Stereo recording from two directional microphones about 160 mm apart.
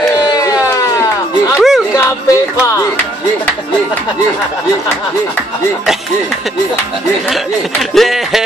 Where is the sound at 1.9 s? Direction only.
20° left (ahead or behind).